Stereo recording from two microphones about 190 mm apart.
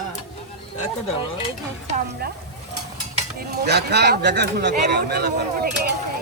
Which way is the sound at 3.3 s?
60° right (ahead or behind).